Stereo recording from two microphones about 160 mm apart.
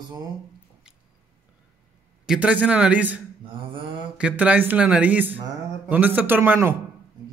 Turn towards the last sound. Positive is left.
turn(degrees=-10)  # may be behind; listen again after turning